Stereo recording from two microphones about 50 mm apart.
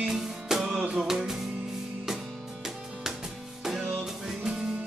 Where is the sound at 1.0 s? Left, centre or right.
Centre.